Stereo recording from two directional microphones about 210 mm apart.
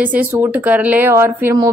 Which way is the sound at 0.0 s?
10° right (ahead or behind).